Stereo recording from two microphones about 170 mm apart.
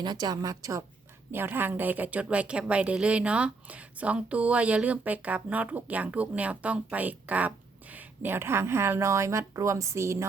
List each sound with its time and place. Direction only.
0.0 s a woman's voice: 25° right (ahead or behind)